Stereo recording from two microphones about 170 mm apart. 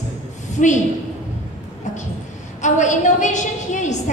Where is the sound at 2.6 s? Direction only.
45° left (ahead or behind).